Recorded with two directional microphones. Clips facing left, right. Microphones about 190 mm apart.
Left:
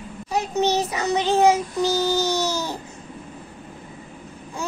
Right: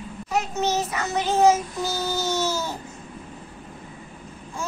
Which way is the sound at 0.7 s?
15° left (ahead or behind).